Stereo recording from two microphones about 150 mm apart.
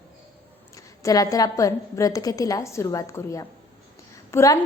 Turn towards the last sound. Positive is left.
turn(degrees=20)  # may be behind; listen again after turning